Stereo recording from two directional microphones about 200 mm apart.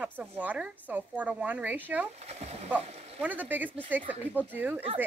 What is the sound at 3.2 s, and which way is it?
A woman's voice, 10° right (ahead or behind).